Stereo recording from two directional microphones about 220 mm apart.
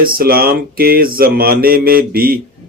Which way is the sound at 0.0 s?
40° right (ahead or behind).